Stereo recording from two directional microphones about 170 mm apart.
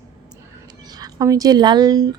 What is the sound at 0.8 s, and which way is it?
Speech, 25° right (ahead or behind).